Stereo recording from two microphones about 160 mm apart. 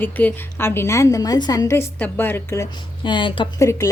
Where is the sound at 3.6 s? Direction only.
20° left (ahead or behind).